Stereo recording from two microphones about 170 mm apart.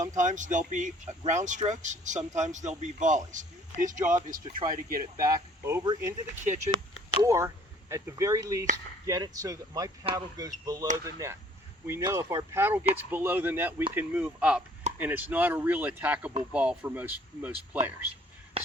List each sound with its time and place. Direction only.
0.2 s speech: 45° right (ahead or behind)
5.2 s speech: 15° right (ahead or behind)
18.6 s a sound: 35° right (ahead or behind)